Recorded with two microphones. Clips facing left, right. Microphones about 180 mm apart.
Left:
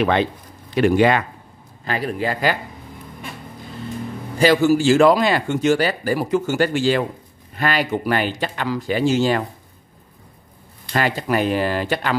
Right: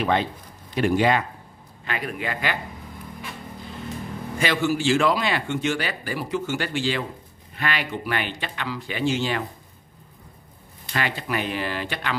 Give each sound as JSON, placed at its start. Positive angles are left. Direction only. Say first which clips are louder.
{"t": 0.0, "sound": "speech", "louder": "left 5 dB", "side_deg": 75}
{"t": 1.9, "sound": "speech", "louder": "left 6 dB", "side_deg": 35}
{"t": 4.4, "sound": "speech", "louder": "left 9 dB", "side_deg": 40}
{"t": 10.9, "sound": "speech", "louder": "left 7 dB", "side_deg": 40}